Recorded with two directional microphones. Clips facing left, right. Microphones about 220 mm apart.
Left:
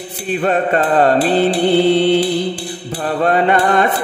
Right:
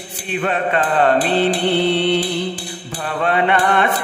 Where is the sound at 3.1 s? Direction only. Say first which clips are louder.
Left 3 dB; 40° left (ahead or behind).